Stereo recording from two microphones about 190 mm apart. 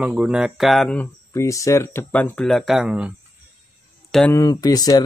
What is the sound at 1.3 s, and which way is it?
Mantra, 15° left (ahead or behind).